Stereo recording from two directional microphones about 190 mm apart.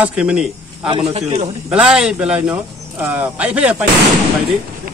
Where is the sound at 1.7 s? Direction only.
5° right (ahead or behind).